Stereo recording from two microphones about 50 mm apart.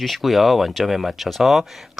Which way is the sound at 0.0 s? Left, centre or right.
Centre.